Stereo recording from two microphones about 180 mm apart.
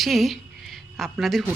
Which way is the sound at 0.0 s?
Centre (ahead or behind).